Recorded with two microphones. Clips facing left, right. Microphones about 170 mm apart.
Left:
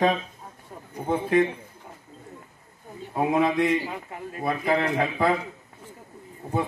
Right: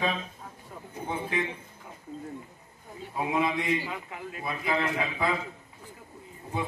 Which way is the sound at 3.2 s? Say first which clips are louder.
Left 6 dB; 45° left (ahead or behind).